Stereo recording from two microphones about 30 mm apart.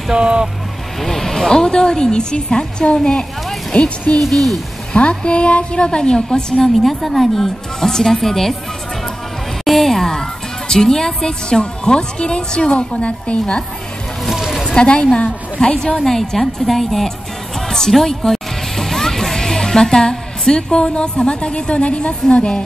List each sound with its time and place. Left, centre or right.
0.1 s speech: right
1.0 s a woman's voice: centre
1.5 s speech: left
3.7 s a woman's voice: left
4.2 s speech: centre
4.9 s a woman's voice: left
6.8 s a woman's voice: centre
9.7 s a woman's voice: centre
11.6 s speech: left
13.0 s a woman's voice: left
14.8 s a woman's voice: left
16.1 s a woman's voice: centre
17.6 s music: centre
17.9 s a woman's voice: centre; by 22.6 s left